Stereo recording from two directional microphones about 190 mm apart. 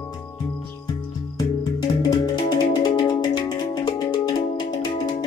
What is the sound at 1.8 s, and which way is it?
Music, 20° left (ahead or behind).